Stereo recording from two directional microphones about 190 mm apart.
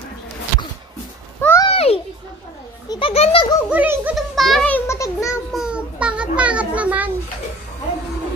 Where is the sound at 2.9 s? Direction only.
30° left (ahead or behind).